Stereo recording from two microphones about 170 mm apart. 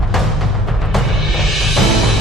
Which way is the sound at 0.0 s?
Centre (ahead or behind).